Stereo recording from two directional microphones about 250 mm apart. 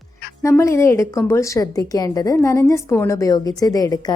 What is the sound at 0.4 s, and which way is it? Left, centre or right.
A woman's voice, centre.